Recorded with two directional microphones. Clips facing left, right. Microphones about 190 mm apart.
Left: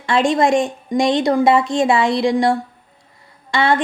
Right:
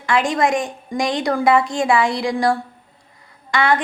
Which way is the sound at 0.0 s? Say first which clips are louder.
Left 3 dB; 25° left (ahead or behind).